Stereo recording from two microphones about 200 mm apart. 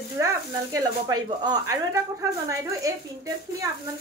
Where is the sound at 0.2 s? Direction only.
15° right (ahead or behind).